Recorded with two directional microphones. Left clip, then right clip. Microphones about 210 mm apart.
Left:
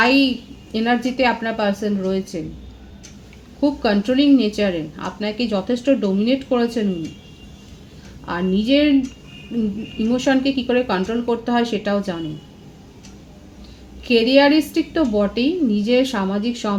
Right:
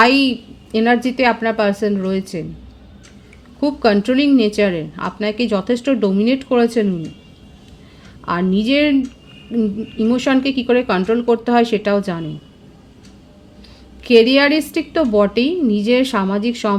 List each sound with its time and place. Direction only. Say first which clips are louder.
0.0 s a woman's voice: right 3 dB; 55° right (ahead or behind)
3.6 s speech: right 4 dB; 55° right (ahead or behind)
8.3 s a woman's voice: right 2 dB; 55° right (ahead or behind)
14.0 s a woman's voice: right 3 dB; 55° right (ahead or behind)